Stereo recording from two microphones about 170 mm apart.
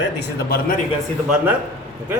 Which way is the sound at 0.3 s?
60° left (ahead or behind).